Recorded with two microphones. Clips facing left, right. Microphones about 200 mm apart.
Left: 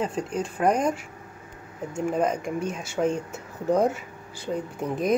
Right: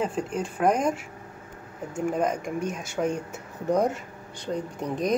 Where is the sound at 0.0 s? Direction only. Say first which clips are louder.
Even; 5° right (ahead or behind).